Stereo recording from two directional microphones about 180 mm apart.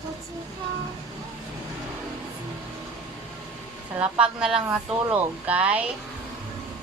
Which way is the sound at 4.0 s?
5° right (ahead or behind).